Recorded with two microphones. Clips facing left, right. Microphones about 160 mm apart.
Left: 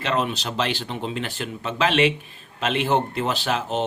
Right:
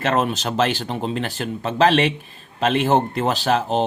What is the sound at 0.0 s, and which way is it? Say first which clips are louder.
Speech: right 4 dB; 45° right (ahead or behind).